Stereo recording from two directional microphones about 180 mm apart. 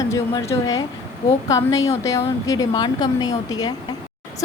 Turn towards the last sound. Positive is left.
turn(degrees=20)  # may be behind; listen again after turning